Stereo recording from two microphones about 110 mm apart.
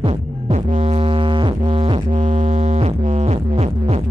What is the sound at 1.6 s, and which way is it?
Music, 65° right (ahead or behind).